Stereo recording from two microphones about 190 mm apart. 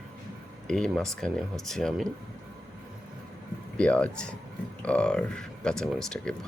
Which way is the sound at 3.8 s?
5° left (ahead or behind).